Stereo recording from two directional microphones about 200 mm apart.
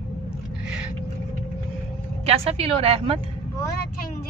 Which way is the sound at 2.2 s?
30° right (ahead or behind).